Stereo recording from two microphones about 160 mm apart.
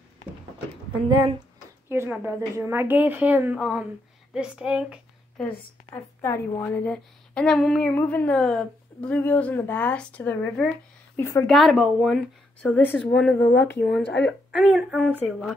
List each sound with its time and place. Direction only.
1.9 s a woman's voice: 10° right (ahead or behind)
5.9 s a woman's voice: 20° left (ahead or behind)
11.4 s a woman's voice: centre (ahead or behind)
14.2 s speech: 5° right (ahead or behind)